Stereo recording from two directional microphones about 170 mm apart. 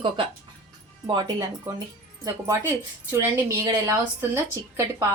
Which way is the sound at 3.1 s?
15° right (ahead or behind).